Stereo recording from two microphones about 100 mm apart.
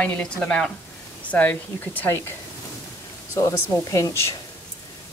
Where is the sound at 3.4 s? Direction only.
30° left (ahead or behind).